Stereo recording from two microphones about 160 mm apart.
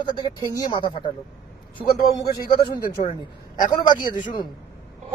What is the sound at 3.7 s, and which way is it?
Speech, 30° left (ahead or behind).